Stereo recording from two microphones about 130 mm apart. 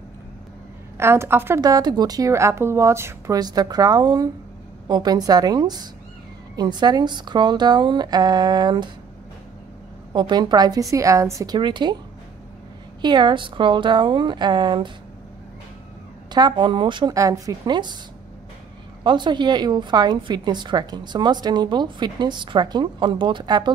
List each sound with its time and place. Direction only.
0.9 s a woman's voice: 20° right (ahead or behind)
1.6 s a woman's voice: 30° right (ahead or behind)
10.1 s a woman's voice: 35° right (ahead or behind)
13.0 s a woman's voice: 35° right (ahead or behind)
16.3 s a woman's voice: 35° right (ahead or behind)
17.1 s a woman's voice: 25° right (ahead or behind)
19.0 s a woman's voice: 35° right (ahead or behind)